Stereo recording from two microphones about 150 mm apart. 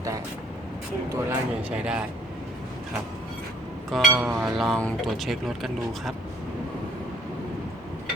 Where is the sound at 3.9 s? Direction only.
Centre (ahead or behind).